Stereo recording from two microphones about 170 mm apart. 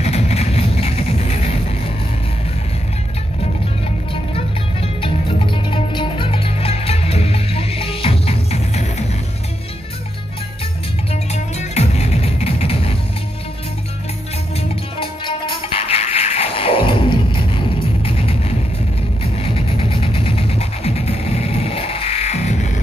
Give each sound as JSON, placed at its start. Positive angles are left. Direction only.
{"t": 0.0, "sound": "music", "side_deg": 40}
{"t": 5.0, "sound": "music", "side_deg": 30}
{"t": 11.5, "sound": "music", "side_deg": 40}
{"t": 15.0, "sound": "music", "side_deg": 30}
{"t": 19.3, "sound": "music", "side_deg": 35}